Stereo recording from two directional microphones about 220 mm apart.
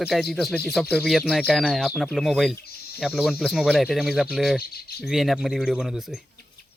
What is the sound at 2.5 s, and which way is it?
Cricket, 45° left (ahead or behind).